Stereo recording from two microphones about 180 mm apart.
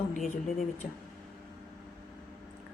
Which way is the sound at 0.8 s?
50° left (ahead or behind).